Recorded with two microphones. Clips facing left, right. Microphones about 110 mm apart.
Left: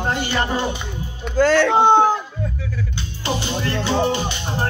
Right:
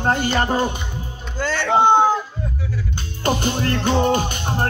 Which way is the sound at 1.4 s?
90° left.